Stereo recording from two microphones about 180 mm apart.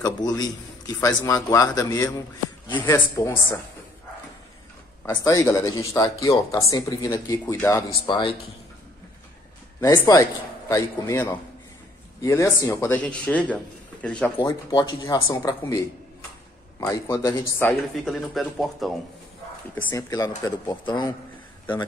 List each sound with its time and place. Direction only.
0.0 s a man's voice: 20° left (ahead or behind)
5.0 s speech: 15° left (ahead or behind)
8.1 s a man's voice: 30° left (ahead or behind)
9.8 s a man's voice: 15° left (ahead or behind)
16.8 s speech: 15° left (ahead or behind)
18.0 s speech: centre (ahead or behind)
19.7 s a man's voice: 10° left (ahead or behind)